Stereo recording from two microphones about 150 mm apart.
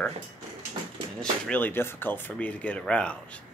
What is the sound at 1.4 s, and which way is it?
Speech, 10° left (ahead or behind).